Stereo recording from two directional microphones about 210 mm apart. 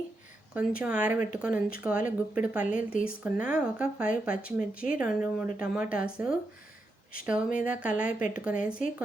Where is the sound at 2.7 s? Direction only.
40° left (ahead or behind).